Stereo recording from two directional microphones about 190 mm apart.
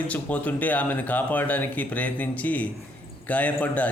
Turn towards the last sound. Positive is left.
turn(degrees=10)  # may be behind; listen again after turning